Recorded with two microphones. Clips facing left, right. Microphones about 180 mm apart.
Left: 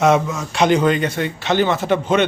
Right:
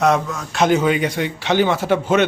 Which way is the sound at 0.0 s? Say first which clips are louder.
Left 2 dB; centre (ahead or behind).